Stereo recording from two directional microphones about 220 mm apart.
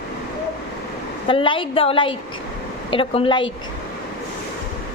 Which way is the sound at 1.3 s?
25° left (ahead or behind).